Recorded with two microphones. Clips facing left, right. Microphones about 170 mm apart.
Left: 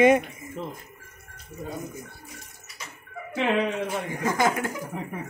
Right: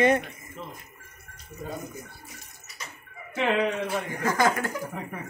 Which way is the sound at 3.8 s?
20° left (ahead or behind).